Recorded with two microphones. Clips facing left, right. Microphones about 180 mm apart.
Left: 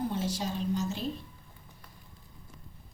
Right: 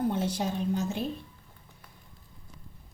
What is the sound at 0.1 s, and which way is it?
Speech, 60° right (ahead or behind).